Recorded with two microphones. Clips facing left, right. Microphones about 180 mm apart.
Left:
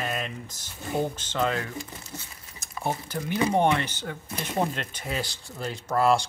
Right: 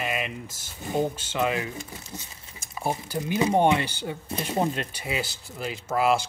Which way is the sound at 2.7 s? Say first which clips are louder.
Right 1 dB; 15° right (ahead or behind).